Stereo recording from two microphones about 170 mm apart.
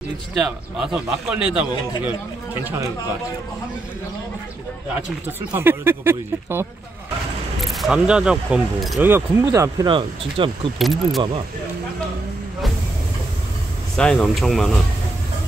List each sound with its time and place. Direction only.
0.4 s a man's voice: 5° right (ahead or behind)
5.2 s speech: 10° right (ahead or behind)
7.6 s a man's voice: centre (ahead or behind)
9.0 s speech: 15° right (ahead or behind); by 10.5 s 30° right (ahead or behind)
10.8 s a man's voice: centre (ahead or behind)
13.9 s a man's voice: 5° left (ahead or behind)